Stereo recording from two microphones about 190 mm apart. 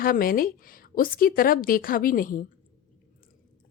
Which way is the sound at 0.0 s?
50° left (ahead or behind).